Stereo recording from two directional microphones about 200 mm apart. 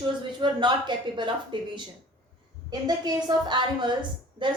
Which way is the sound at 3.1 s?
20° right (ahead or behind).